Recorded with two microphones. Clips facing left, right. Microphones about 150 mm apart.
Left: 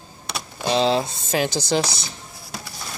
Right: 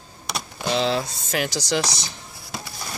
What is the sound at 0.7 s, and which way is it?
Speech, 20° left (ahead or behind).